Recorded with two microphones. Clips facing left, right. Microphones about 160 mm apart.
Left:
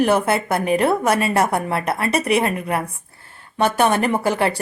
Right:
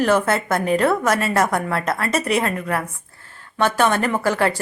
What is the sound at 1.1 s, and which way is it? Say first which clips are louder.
A woman's voice: left 1 dB; 15° left (ahead or behind).